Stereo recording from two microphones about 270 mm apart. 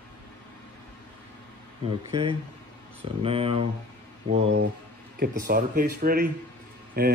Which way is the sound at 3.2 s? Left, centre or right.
Right.